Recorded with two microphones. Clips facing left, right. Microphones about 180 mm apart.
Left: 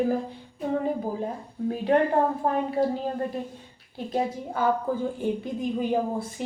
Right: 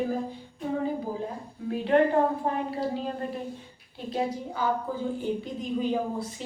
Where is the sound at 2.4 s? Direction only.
50° left (ahead or behind).